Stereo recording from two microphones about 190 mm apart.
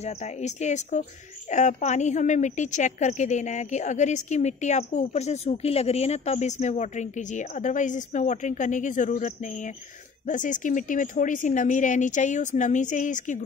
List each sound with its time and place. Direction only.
0.0 s a woman's voice: 35° left (ahead or behind)